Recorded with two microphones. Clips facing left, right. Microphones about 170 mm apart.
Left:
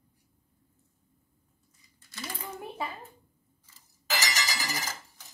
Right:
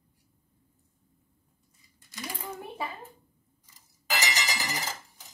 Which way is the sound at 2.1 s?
15° right (ahead or behind).